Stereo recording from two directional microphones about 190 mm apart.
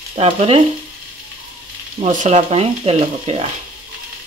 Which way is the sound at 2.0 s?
40° right (ahead or behind).